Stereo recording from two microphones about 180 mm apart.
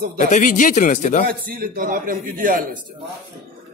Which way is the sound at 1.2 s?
50° right (ahead or behind).